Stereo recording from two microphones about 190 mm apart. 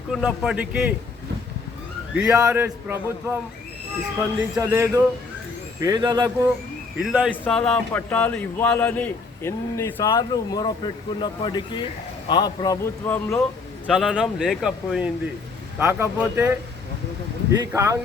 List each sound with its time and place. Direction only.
0.1 s speech: centre (ahead or behind)
2.1 s speech: 10° right (ahead or behind)
4.6 s speech: 15° right (ahead or behind)
7.0 s speech: 5° right (ahead or behind)
7.4 s a man's voice: 5° left (ahead or behind)
13.8 s speech: 5° right (ahead or behind)
17.7 s speech: 15° right (ahead or behind)